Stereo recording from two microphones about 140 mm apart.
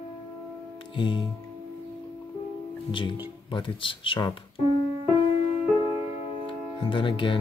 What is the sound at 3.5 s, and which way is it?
Speech, 35° left (ahead or behind).